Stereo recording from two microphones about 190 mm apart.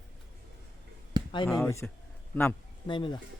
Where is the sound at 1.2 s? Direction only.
20° right (ahead or behind).